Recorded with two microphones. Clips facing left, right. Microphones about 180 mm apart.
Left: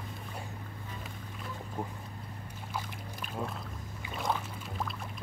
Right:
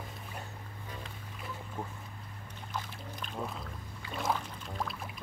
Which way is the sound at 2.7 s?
5° left (ahead or behind).